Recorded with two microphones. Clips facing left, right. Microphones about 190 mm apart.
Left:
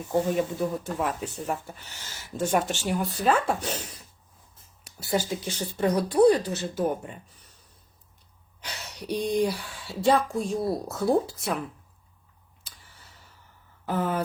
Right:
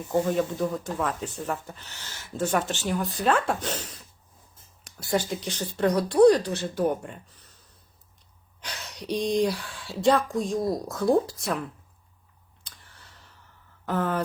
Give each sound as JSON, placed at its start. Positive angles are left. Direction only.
{"t": 0.1, "sound": "speech", "side_deg": 10}
{"t": 9.1, "sound": "speech", "side_deg": 10}
{"t": 9.6, "sound": "speech", "side_deg": -65}
{"t": 9.8, "sound": "speech", "side_deg": 5}
{"t": 12.6, "sound": "a sound", "side_deg": 5}
{"t": 13.8, "sound": "speech", "side_deg": 5}